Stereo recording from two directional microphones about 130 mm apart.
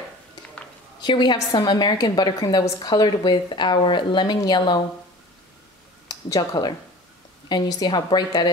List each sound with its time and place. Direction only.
1.0 s a woman's voice: 35° left (ahead or behind)
6.0 s a woman's voice: 30° left (ahead or behind)